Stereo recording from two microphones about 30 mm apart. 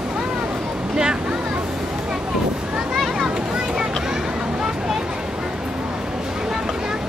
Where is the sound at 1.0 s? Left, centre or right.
Right.